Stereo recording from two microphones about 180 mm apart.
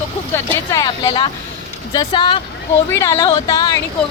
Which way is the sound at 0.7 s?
20° left (ahead or behind).